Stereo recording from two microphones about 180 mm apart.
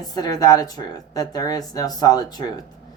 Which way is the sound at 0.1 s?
20° left (ahead or behind).